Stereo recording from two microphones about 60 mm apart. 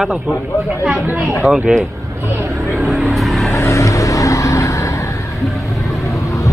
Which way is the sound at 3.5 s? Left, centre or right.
Left.